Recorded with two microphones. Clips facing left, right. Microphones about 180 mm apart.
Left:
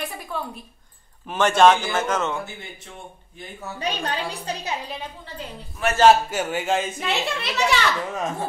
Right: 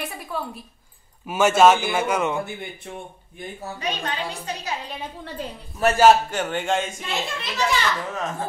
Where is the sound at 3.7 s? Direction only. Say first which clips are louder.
Left 2 dB; 35° left (ahead or behind).